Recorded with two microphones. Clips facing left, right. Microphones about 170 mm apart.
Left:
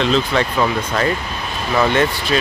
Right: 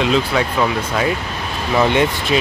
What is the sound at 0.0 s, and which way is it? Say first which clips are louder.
Speech: even; 5° right (ahead or behind).